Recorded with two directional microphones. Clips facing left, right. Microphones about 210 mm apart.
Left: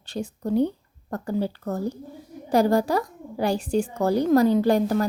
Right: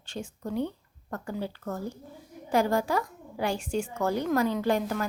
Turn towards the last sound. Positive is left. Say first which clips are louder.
# left 7 dB
turn(degrees=35)  # may be behind; listen again after turning